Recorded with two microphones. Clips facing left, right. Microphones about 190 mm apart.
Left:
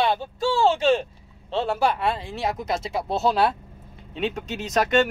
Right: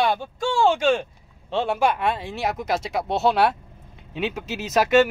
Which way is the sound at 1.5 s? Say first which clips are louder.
Right 1 dB; 30° left (ahead or behind).